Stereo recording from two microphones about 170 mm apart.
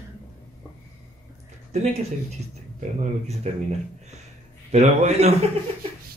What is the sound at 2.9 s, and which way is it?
Speech, 40° right (ahead or behind).